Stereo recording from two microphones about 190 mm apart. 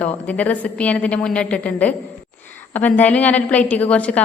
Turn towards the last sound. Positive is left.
turn(degrees=5)  # may be behind; listen again after turning